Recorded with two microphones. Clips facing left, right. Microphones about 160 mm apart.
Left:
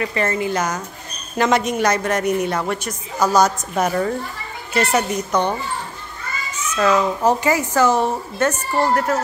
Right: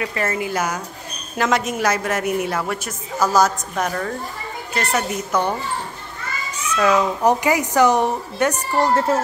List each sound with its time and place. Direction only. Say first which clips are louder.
0.0 s a woman's voice: left 2 dB; 5° right (ahead or behind)
4.7 s a woman's voice: left 4 dB; centre (ahead or behind)
6.8 s a woman's voice: even; 10° right (ahead or behind)